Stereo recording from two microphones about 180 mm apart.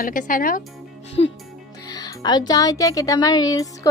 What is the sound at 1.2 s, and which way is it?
Speech, 35° left (ahead or behind).